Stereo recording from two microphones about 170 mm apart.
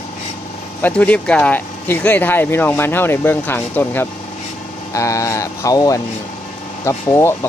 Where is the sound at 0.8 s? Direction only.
10° left (ahead or behind).